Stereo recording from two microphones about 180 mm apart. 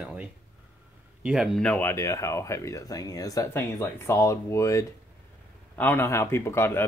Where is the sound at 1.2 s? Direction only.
5° right (ahead or behind).